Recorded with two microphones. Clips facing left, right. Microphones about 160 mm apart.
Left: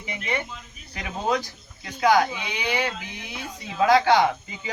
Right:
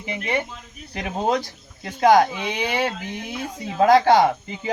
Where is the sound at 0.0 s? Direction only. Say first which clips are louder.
Right 4 dB; 35° right (ahead or behind).